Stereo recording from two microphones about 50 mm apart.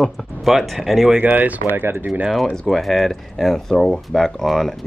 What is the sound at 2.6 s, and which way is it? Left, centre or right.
Speech, centre.